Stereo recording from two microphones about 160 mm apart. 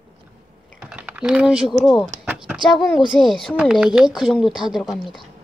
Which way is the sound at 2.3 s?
5° right (ahead or behind).